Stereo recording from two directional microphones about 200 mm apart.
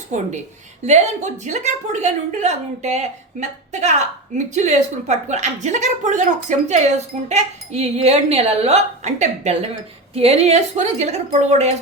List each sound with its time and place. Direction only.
0.9 s a woman's voice: 35° right (ahead or behind)